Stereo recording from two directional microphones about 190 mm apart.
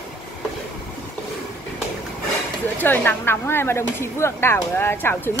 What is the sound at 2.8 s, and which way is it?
Speech, 10° left (ahead or behind).